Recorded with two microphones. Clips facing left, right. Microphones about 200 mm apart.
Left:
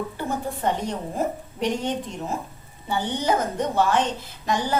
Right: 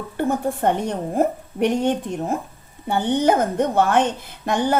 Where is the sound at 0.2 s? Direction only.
55° right (ahead or behind).